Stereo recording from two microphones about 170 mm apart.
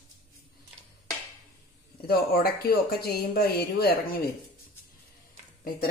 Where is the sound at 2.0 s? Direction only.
65° left (ahead or behind).